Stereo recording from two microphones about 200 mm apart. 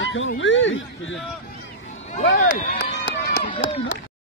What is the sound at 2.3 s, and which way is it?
Speech, 65° left (ahead or behind).